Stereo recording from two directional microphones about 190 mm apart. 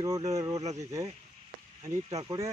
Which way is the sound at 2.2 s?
20° right (ahead or behind).